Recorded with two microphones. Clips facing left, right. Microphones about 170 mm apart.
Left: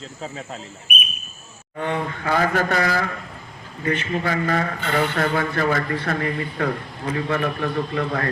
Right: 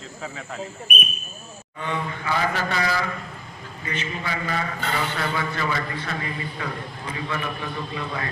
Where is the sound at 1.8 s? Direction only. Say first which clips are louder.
Left 4 dB; 50° left (ahead or behind).